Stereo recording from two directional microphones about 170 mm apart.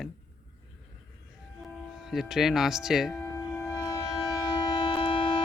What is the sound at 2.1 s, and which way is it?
A man's voice, centre (ahead or behind).